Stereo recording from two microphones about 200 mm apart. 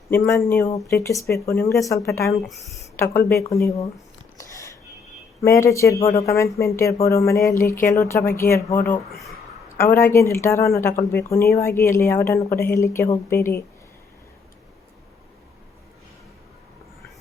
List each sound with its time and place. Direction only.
0.1 s a woman's voice: 5° left (ahead or behind)
2.5 s a woman's voice: centre (ahead or behind)
3.2 s a woman's voice: 15° left (ahead or behind)
4.4 s a sound: 15° left (ahead or behind)
5.4 s a woman's voice: 15° left (ahead or behind)